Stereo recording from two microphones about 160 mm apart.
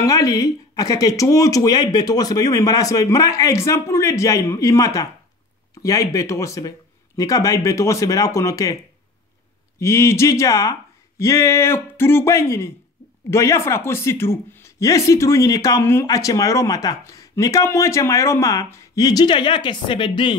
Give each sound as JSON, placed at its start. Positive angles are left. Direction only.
{"t": 0.0, "sound": "speech", "side_deg": 20}
{"t": 9.8, "sound": "speech", "side_deg": 15}